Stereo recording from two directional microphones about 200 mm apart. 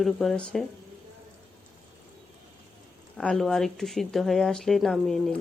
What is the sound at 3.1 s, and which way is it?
Speech, 5° left (ahead or behind).